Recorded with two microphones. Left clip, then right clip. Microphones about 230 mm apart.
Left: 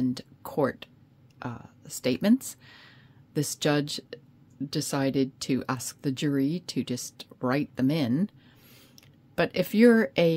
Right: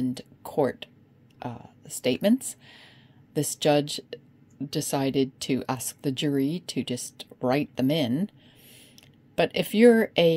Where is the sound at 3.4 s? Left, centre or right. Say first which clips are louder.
Right 4 dB; left.